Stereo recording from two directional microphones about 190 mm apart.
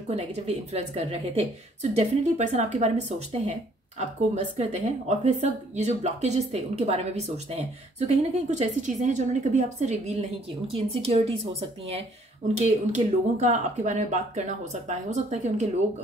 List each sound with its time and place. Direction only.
0.1 s a woman's voice: 35° right (ahead or behind)
4.6 s a woman's voice: 35° right (ahead or behind)
8.1 s a woman's voice: 35° right (ahead or behind)
12.5 s a woman's voice: 35° right (ahead or behind)